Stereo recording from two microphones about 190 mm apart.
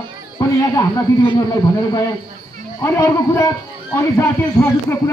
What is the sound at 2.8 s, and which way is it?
Speech, 15° left (ahead or behind).